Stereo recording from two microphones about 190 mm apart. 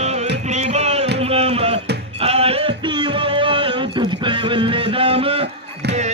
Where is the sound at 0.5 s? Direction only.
35° right (ahead or behind).